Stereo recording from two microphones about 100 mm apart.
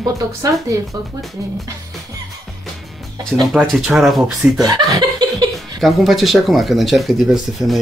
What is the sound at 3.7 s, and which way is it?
Speech, 5° right (ahead or behind).